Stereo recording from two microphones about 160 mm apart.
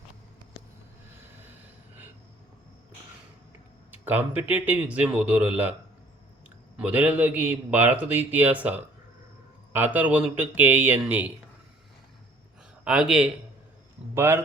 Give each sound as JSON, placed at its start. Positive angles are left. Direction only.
{"t": 3.9, "sound": "a man's voice", "side_deg": -10}
{"t": 6.7, "sound": "a man's voice", "side_deg": -10}
{"t": 12.8, "sound": "a man's voice", "side_deg": -5}
{"t": 14.2, "sound": "a man's voice", "side_deg": -15}